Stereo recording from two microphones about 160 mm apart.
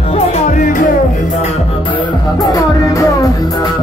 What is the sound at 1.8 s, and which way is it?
Music, 30° left (ahead or behind).